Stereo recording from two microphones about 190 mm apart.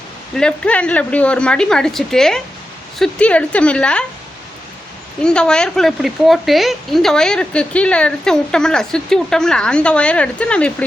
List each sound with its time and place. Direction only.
0.3 s speech: 5° left (ahead or behind)
5.2 s speech: 5° left (ahead or behind)